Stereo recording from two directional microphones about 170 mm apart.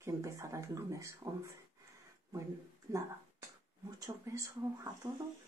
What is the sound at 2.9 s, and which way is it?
Speech, 20° right (ahead or behind).